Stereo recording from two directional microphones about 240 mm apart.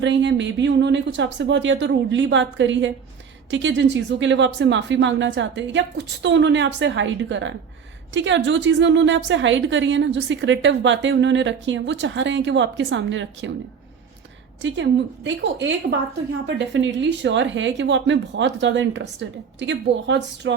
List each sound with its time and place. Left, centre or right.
0.0 s a woman's voice: right
14.6 s a woman's voice: right